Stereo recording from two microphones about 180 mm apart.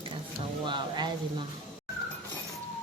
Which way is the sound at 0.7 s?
25° right (ahead or behind).